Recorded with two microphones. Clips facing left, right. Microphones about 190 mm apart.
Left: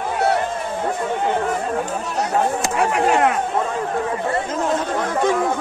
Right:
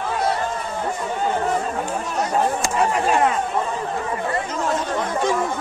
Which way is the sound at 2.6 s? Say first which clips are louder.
Left 2 dB; 70° left (ahead or behind).